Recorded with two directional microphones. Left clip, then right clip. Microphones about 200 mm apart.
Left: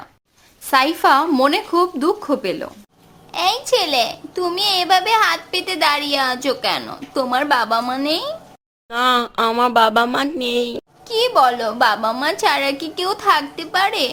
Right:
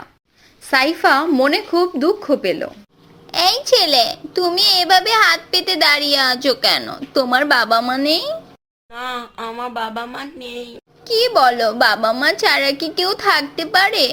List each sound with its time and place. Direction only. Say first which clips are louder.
0.7 s speech: even; centre (ahead or behind)
3.3 s a child's voice: right 3 dB; 15° right (ahead or behind)
8.9 s speech: left 10 dB; 50° left (ahead or behind)
11.1 s a child's voice: right 1 dB; 10° right (ahead or behind)